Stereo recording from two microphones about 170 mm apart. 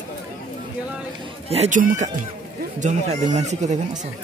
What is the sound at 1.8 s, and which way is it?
Speech, 55° right (ahead or behind).